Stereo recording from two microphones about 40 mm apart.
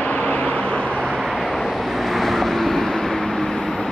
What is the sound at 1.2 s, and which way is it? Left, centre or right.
Vehicle, centre.